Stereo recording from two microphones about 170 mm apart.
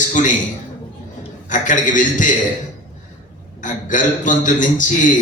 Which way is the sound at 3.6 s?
50° left (ahead or behind).